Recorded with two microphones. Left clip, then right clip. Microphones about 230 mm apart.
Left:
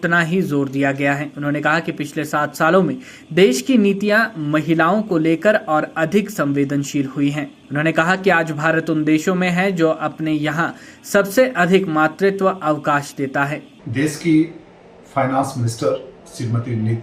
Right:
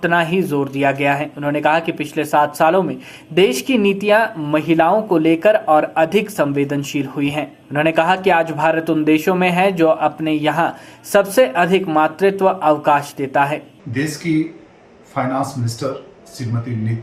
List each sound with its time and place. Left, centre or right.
0.0 s speech: left
14.3 s speech: centre
16.4 s speech: centre